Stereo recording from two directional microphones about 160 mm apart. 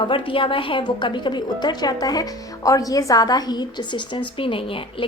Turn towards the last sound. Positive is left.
turn(degrees=35)  # may be behind; listen again after turning